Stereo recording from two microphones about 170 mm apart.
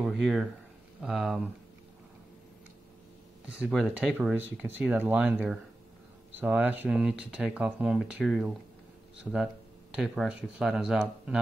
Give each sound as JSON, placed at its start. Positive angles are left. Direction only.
{"t": 0.0, "sound": "speech", "side_deg": -5}
{"t": 3.4, "sound": "speech", "side_deg": -5}